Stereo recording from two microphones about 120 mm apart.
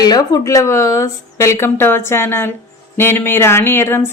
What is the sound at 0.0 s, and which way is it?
Speech, 30° left (ahead or behind).